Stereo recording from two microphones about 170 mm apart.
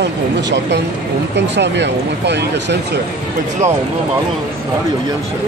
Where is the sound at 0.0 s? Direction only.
90° right.